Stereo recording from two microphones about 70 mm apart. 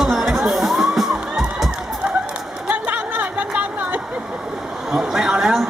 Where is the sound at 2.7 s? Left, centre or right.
Right.